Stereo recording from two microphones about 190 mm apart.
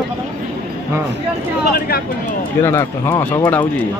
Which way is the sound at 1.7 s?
50° left (ahead or behind).